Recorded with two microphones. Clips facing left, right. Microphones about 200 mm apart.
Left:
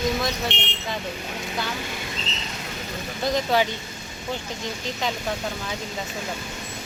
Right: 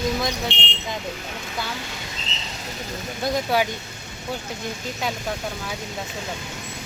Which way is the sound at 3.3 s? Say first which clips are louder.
Even; 10° right (ahead or behind).